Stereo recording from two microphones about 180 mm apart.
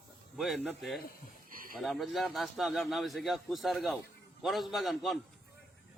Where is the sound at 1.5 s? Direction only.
50° right (ahead or behind).